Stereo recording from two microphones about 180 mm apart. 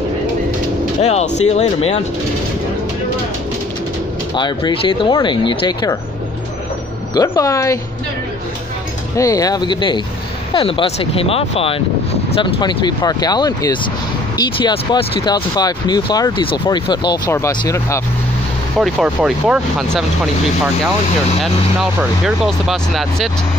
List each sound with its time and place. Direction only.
1.0 s speech: 40° left (ahead or behind)
4.4 s speech: 25° left (ahead or behind)
7.2 s speech: 20° left (ahead or behind)
9.1 s speech: 20° left (ahead or behind)
18.8 s speech: centre (ahead or behind)
22.2 s speech: centre (ahead or behind)